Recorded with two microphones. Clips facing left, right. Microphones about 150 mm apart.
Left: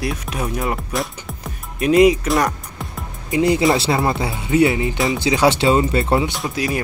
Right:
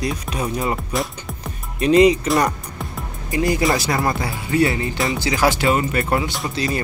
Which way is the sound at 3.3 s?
25° left (ahead or behind).